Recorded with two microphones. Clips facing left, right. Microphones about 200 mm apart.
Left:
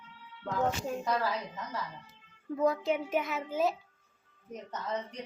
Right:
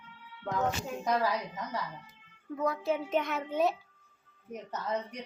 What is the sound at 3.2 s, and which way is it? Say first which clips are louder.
Speech: right 1 dB; centre (ahead or behind).